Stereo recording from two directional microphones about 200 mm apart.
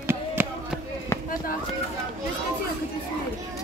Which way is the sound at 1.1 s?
15° left (ahead or behind).